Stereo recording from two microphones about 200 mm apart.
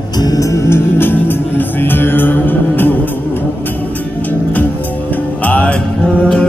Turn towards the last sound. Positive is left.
turn(degrees=5)  # may be behind; listen again after turning